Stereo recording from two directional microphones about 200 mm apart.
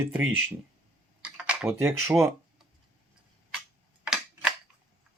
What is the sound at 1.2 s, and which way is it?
Typing, 5° right (ahead or behind).